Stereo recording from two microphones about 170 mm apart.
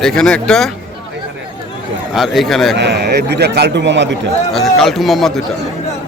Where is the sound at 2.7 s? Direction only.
80° right.